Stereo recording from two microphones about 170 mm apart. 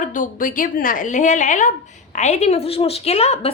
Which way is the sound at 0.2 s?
50° left (ahead or behind).